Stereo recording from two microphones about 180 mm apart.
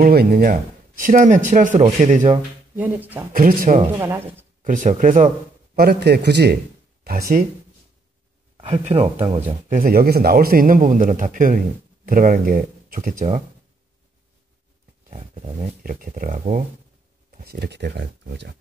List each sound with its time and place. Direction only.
0.0 s speech: 55° right (ahead or behind); by 2.8 s 40° right (ahead or behind)
2.8 s speech: 10° right (ahead or behind)
3.3 s a man's voice: 50° right (ahead or behind)
4.0 s speech: 15° right (ahead or behind)
4.6 s a man's voice: 45° right (ahead or behind)
5.8 s a man's voice: 65° right (ahead or behind)
7.1 s a man's voice: 55° right (ahead or behind)
9.1 s speech: 30° right (ahead or behind)
9.7 s a man's voice: 50° right (ahead or behind)
15.0 s dog: 35° right (ahead or behind)
15.8 s a man's voice: 50° right (ahead or behind)
17.3 s speech: 60° right (ahead or behind)